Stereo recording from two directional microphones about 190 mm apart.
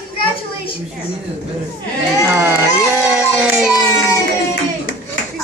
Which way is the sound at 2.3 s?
10° right (ahead or behind).